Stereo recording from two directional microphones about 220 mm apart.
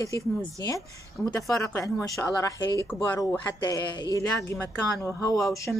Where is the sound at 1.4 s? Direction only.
15° left (ahead or behind).